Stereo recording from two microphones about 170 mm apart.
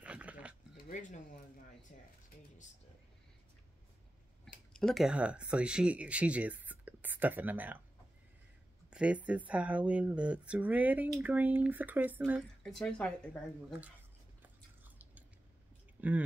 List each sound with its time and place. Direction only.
0.0 s a sound: 10° right (ahead or behind)
0.8 s speech: 50° left (ahead or behind)
4.7 s speech: centre (ahead or behind)
8.9 s speech: 5° right (ahead or behind)
12.3 s speech: centre (ahead or behind)
14.8 s a sound: 10° right (ahead or behind)
16.0 s speech: 10° right (ahead or behind)